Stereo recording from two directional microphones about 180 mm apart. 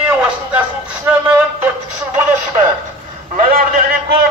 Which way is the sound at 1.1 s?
10° right (ahead or behind).